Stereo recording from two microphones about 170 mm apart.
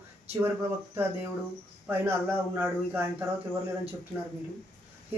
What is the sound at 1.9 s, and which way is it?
Speech, 10° right (ahead or behind).